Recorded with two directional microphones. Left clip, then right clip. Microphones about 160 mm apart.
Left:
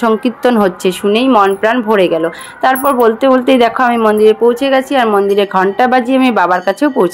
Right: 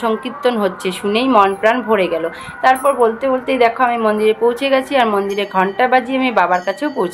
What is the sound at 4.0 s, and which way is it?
A woman's voice, 30° left (ahead or behind).